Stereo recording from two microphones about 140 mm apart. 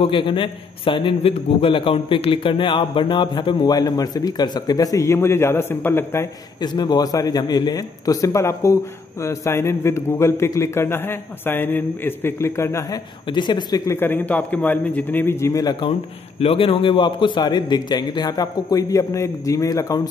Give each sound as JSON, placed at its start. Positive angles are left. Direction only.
{"t": 0.0, "sound": "a man's voice", "side_deg": 35}
{"t": 6.6, "sound": "a man's voice", "side_deg": 30}
{"t": 13.3, "sound": "a man's voice", "side_deg": 30}
{"t": 16.3, "sound": "a man's voice", "side_deg": 40}